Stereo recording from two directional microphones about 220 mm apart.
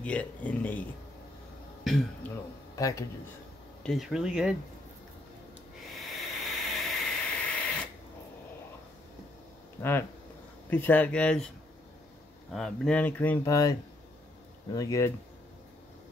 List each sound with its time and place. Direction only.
0.0 s speech: 5° left (ahead or behind)
2.7 s a man's voice: 15° left (ahead or behind)
3.8 s speech: centre (ahead or behind)
5.9 s hiss: centre (ahead or behind)
9.8 s speech: 10° left (ahead or behind)
12.5 s speech: 5° left (ahead or behind)